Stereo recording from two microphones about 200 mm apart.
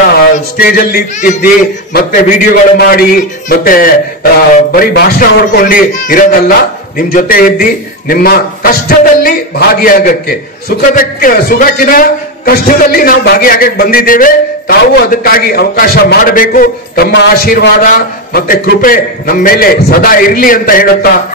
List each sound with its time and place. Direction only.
0.1 s a man's voice: 50° left (ahead or behind)
2.9 s a man's voice: 45° left (ahead or behind)